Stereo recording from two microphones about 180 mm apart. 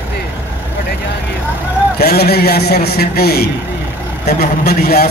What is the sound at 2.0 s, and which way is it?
A man's voice, 60° left (ahead or behind).